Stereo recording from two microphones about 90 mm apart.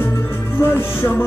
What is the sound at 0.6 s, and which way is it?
Music, 25° left (ahead or behind).